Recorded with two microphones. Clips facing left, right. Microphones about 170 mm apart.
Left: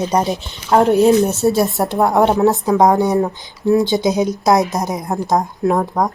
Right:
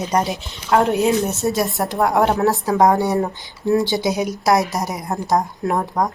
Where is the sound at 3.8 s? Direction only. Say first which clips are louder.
Left 4 dB; 20° left (ahead or behind).